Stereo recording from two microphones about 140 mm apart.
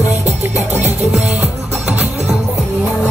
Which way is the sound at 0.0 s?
50° right (ahead or behind).